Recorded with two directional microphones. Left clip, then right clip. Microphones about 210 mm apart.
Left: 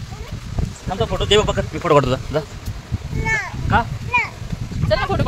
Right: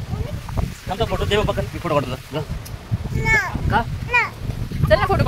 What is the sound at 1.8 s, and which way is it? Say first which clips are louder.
Speech: left 7 dB; 55° left (ahead or behind).